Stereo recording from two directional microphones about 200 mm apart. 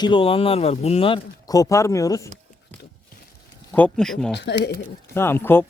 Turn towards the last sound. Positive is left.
turn(degrees=10)  # may be behind; listen again after turning